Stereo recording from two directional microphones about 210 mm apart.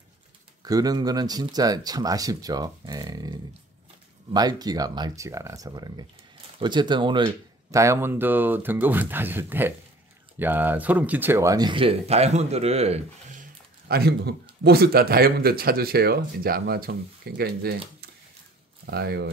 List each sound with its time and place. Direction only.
0.6 s speech: 15° right (ahead or behind); by 17.7 s 50° right (ahead or behind)
18.9 s speech: 50° right (ahead or behind)